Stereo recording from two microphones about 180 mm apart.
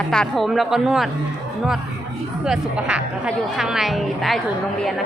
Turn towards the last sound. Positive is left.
turn(degrees=0)  # may be behind; listen again after turning